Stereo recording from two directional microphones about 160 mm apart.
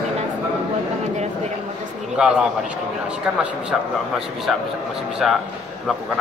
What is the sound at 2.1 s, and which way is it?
A man's voice, 5° right (ahead or behind).